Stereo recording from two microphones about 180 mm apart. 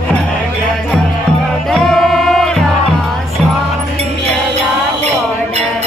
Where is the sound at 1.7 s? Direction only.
Centre (ahead or behind).